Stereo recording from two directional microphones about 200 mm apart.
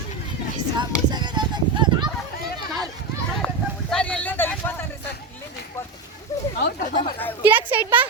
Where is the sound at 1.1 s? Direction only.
20° right (ahead or behind).